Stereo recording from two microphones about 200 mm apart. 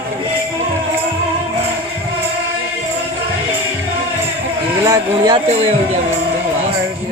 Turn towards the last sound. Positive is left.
turn(degrees=-20)  # may be behind; listen again after turning